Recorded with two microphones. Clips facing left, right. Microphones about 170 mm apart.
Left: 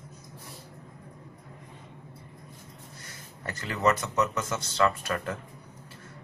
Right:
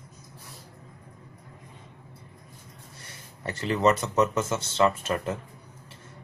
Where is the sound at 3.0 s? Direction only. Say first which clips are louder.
Right 3 dB; 30° right (ahead or behind).